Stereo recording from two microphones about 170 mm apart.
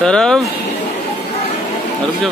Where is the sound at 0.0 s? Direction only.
5° left (ahead or behind).